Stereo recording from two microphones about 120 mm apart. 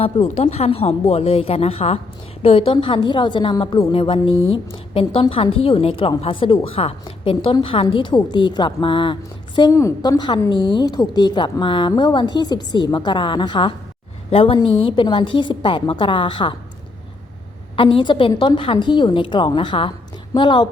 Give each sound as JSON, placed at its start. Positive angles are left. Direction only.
{"t": 0.0, "sound": "a woman's voice", "side_deg": 60}
{"t": 9.7, "sound": "a woman's voice", "side_deg": 25}
{"t": 17.7, "sound": "a woman's voice", "side_deg": 45}